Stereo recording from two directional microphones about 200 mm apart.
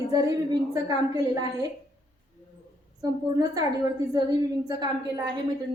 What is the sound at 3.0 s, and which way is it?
A woman's voice, 20° right (ahead or behind).